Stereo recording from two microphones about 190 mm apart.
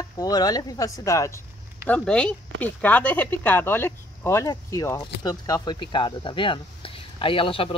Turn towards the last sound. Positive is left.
turn(degrees=30)  # may be behind; listen again after turning